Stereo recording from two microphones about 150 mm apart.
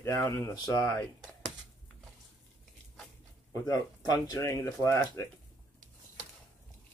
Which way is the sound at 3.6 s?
25° left (ahead or behind).